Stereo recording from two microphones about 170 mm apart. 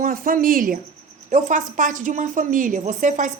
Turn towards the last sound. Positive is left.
turn(degrees=-50)  # may be behind; listen again after turning